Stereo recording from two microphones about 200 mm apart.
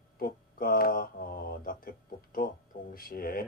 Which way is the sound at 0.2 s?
45° left (ahead or behind).